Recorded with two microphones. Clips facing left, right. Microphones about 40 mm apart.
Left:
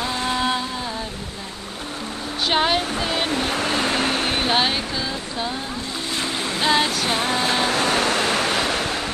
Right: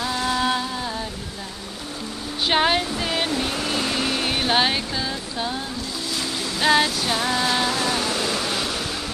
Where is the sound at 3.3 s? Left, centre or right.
Left.